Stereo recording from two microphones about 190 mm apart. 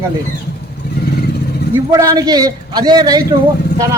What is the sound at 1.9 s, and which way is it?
A man's voice, 20° right (ahead or behind).